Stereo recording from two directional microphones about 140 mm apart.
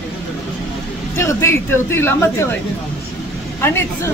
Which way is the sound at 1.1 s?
20° left (ahead or behind).